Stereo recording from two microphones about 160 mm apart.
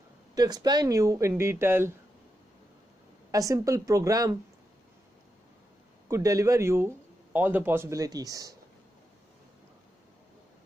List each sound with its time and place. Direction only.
0.3 s a man's voice: 25° right (ahead or behind)
3.3 s a man's voice: 20° right (ahead or behind)
6.0 s a man's voice: 20° right (ahead or behind)